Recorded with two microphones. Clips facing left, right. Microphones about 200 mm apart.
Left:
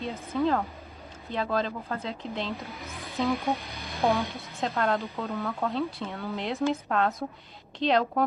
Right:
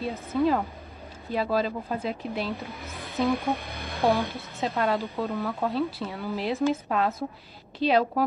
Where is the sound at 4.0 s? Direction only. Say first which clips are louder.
Right 2 dB; centre (ahead or behind).